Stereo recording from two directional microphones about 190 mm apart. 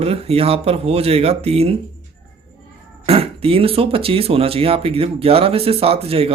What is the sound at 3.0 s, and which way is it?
Speech, 30° right (ahead or behind).